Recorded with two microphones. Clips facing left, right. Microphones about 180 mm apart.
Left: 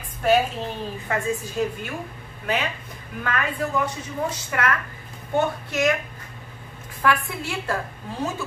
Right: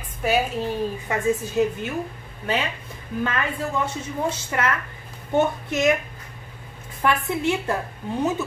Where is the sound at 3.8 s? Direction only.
25° right (ahead or behind).